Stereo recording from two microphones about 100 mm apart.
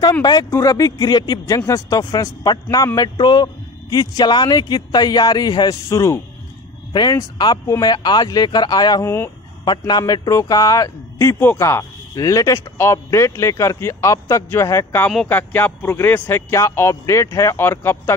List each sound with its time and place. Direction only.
0.2 s speech: 45° left (ahead or behind)
0.5 s a man's voice: 35° left (ahead or behind)
3.2 s speech: 50° left (ahead or behind)
3.9 s a man's voice: 40° left (ahead or behind)
5.9 s speech: 30° left (ahead or behind)
6.9 s speech: 40° left (ahead or behind)
9.0 s speech: 25° left (ahead or behind)
9.7 s a man's voice: 45° left (ahead or behind); by 18.1 s 25° left (ahead or behind)